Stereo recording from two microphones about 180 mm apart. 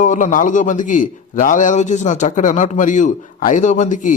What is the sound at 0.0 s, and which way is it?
A man's voice, 45° left (ahead or behind).